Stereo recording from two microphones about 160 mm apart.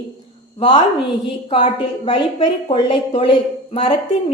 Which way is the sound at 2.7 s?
35° left (ahead or behind).